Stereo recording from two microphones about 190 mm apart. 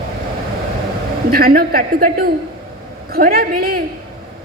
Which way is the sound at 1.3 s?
50° right (ahead or behind).